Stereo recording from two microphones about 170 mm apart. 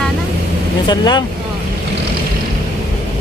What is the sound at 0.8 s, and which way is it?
Speech, 25° left (ahead or behind).